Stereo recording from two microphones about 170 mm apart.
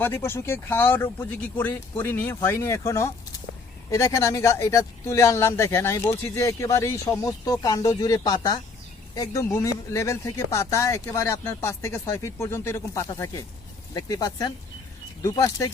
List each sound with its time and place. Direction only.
0.0 s speech: 15° left (ahead or behind)